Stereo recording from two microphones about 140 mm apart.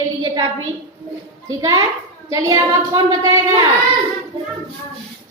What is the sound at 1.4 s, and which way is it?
A woman's voice, 25° right (ahead or behind).